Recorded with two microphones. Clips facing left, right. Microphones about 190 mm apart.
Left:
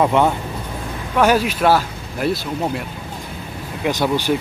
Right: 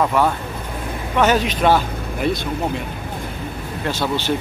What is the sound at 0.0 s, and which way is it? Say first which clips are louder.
Speech: left 2 dB; 20° left (ahead or behind).